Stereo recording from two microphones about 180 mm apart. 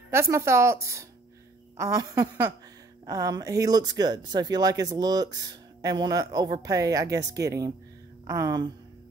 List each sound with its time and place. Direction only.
0.1 s speech: 15° right (ahead or behind)